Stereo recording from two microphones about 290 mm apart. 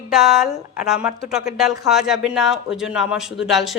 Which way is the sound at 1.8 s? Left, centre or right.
Centre.